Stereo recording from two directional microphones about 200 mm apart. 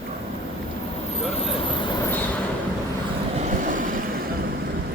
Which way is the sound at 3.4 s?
40° right (ahead or behind).